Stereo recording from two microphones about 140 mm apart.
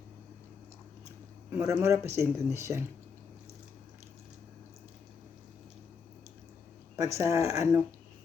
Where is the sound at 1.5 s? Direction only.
15° right (ahead or behind).